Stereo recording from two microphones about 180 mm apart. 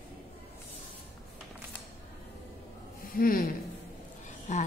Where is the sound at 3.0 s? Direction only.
50° left (ahead or behind).